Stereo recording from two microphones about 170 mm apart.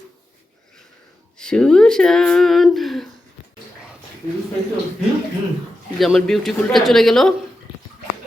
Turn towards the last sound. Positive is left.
turn(degrees=0)  # may be behind; listen again after turning